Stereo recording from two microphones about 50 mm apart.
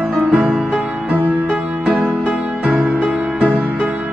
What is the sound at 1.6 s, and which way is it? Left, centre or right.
Music, right.